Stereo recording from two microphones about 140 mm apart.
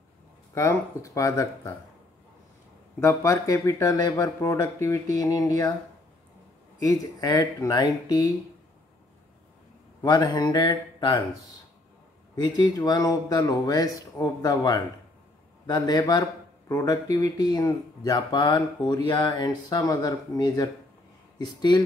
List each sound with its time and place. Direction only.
0.6 s speech: 20° left (ahead or behind)
3.0 s speech: 20° left (ahead or behind)
6.8 s speech: 25° left (ahead or behind)
10.0 s speech: 30° left (ahead or behind)
12.4 s speech: 30° left (ahead or behind)